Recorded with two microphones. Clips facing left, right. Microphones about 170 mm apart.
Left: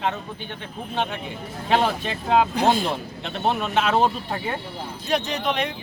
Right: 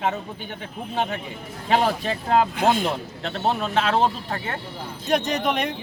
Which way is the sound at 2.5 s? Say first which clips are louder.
Left 1 dB; 35° left (ahead or behind).